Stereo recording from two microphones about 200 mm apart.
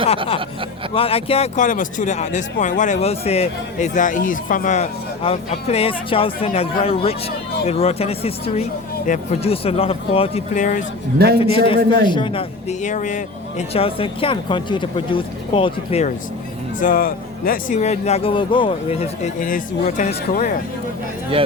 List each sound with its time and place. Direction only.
0.9 s speech: 30° left (ahead or behind)
11.3 s speech: 30° left (ahead or behind)
16.8 s speech: 45° left (ahead or behind)